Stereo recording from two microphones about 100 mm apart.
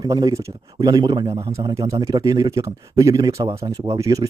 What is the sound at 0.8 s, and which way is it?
A man's voice, 45° right (ahead or behind).